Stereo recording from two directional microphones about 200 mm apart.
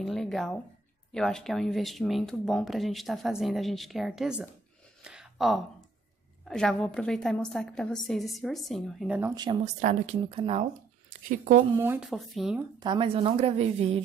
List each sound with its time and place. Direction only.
0.0 s speech: centre (ahead or behind)
5.0 s a sound: 5° right (ahead or behind)
6.4 s speech: 5° left (ahead or behind)
9.3 s a woman's voice: 20° right (ahead or behind)
9.8 s speech: 35° right (ahead or behind)
11.8 s speech: 10° right (ahead or behind)
12.8 s a woman's voice: 25° right (ahead or behind)